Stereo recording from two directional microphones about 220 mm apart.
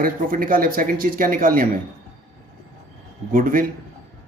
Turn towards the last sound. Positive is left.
turn(degrees=-40)  # may be behind; listen again after turning